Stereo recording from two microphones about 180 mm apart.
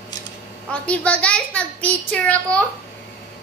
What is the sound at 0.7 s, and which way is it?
A woman's voice, 5° left (ahead or behind).